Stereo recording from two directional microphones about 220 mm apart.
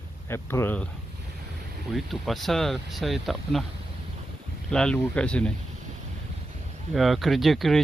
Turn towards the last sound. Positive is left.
turn(degrees=0)  # may be behind; listen again after turning